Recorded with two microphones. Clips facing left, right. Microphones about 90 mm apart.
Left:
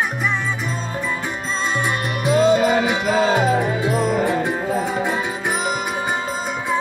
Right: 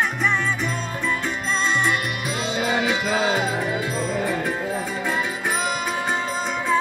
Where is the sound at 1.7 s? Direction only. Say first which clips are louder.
Left 2 dB; 20° left (ahead or behind).